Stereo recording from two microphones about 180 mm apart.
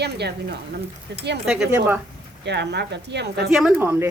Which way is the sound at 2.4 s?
70° right (ahead or behind).